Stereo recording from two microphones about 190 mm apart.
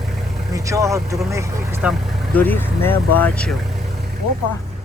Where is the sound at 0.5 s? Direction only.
15° right (ahead or behind).